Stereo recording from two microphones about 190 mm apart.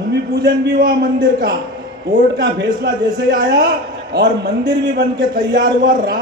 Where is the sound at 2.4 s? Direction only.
65° right (ahead or behind).